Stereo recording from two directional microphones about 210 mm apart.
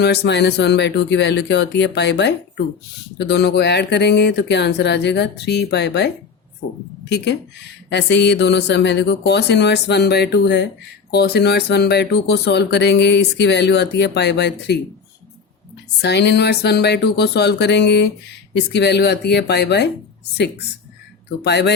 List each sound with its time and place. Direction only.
0.0 s speech: 50° left (ahead or behind)
7.9 s speech: 55° left (ahead or behind)
16.0 s speech: 55° left (ahead or behind)
21.4 s speech: 55° left (ahead or behind)